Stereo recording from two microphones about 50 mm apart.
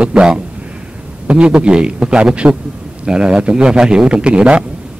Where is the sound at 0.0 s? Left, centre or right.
Centre.